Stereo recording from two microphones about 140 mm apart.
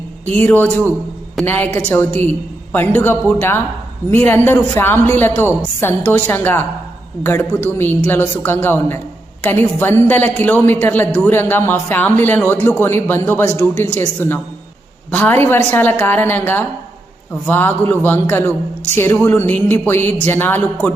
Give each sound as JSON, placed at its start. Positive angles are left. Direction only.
{"t": 0.3, "sound": "a man's voice", "side_deg": 15}